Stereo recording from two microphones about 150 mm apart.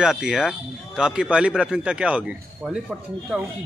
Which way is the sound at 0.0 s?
5° right (ahead or behind).